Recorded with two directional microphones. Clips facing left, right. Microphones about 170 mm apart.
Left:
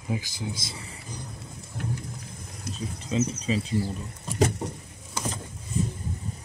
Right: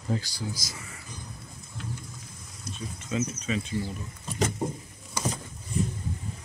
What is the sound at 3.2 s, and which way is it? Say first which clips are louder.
Speech: left 5 dB; 30° left (ahead or behind).